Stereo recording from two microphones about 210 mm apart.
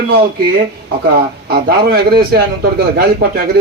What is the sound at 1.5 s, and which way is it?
Speech, 45° right (ahead or behind).